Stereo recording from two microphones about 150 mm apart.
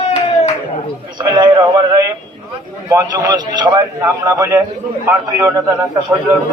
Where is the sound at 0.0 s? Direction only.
45° left (ahead or behind).